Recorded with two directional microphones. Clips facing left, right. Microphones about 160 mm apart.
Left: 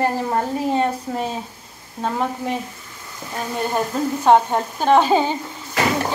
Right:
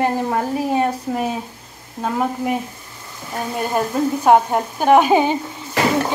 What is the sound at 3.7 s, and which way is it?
A woman's voice, 10° right (ahead or behind).